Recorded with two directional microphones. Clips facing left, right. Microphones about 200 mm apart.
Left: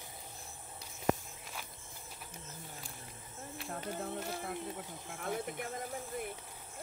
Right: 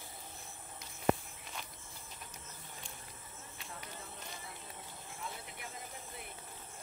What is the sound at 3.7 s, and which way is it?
Music, 60° left (ahead or behind).